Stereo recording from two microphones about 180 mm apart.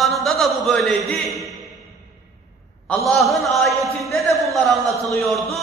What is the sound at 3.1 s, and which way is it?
A man's voice, centre (ahead or behind).